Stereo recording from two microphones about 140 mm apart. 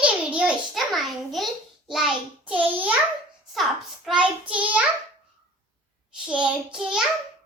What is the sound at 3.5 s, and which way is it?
A child's voice, centre (ahead or behind).